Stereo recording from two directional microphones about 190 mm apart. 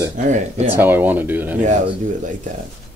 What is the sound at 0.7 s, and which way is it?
Speech, 10° right (ahead or behind).